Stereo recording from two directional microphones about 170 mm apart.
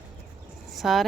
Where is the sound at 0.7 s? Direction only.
Centre (ahead or behind).